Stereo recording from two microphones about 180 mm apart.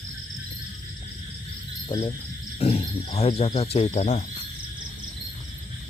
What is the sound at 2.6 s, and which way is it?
Speech, 35° left (ahead or behind).